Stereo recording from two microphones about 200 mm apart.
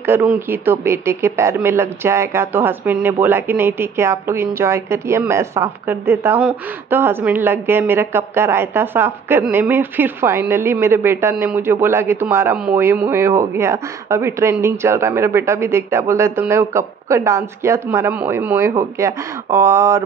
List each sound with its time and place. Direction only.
0.0 s speech: 10° right (ahead or behind)